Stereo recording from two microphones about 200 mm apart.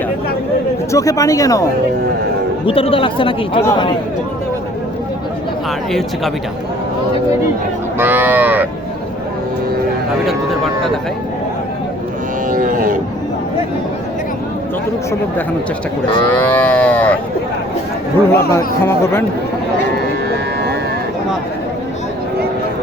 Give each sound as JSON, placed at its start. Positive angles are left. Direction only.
{"t": 0.9, "sound": "speech", "side_deg": 15}
{"t": 2.6, "sound": "speech", "side_deg": 25}
{"t": 7.9, "sound": "cattle", "side_deg": -10}
{"t": 12.5, "sound": "a sound", "side_deg": -45}
{"t": 16.3, "sound": "speech", "side_deg": 10}
{"t": 18.3, "sound": "speech", "side_deg": 10}